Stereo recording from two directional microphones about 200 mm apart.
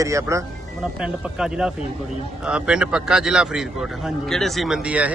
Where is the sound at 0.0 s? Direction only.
15° right (ahead or behind).